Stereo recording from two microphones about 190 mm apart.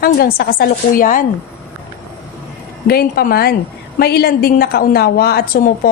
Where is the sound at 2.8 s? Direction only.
55° left (ahead or behind).